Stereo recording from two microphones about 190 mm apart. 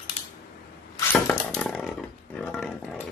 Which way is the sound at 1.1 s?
5° left (ahead or behind).